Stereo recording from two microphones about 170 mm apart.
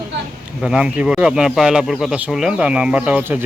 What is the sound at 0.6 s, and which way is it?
Speech, 5° right (ahead or behind).